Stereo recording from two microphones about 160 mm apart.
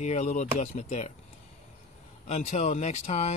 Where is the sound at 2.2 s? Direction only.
45° left (ahead or behind).